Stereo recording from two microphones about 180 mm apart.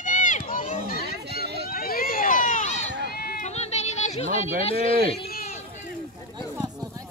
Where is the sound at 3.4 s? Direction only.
35° left (ahead or behind).